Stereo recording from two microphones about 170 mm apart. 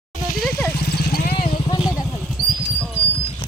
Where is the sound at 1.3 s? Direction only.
30° left (ahead or behind).